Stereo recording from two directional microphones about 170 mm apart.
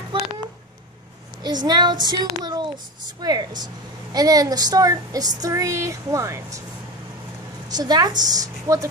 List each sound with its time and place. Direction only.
0.1 s a sound: 25° right (ahead or behind)
1.4 s a woman's voice: 25° right (ahead or behind)
7.6 s a woman's voice: 25° right (ahead or behind)